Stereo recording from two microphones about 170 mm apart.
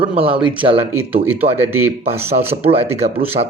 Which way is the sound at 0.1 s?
35° right (ahead or behind).